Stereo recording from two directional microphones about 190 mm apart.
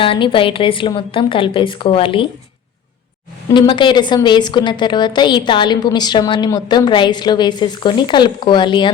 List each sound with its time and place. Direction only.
0.0 s a woman's voice: 25° left (ahead or behind)
3.5 s a woman's voice: 25° left (ahead or behind)